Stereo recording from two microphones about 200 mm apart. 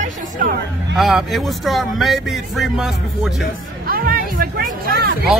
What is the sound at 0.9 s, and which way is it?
Speech, centre (ahead or behind).